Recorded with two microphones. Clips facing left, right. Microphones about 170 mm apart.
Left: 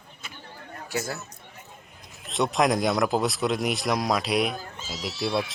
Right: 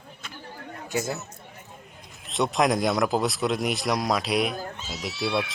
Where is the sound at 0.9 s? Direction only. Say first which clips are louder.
Right 2 dB; 20° right (ahead or behind).